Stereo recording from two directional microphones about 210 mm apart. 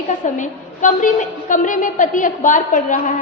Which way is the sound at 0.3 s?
35° left (ahead or behind).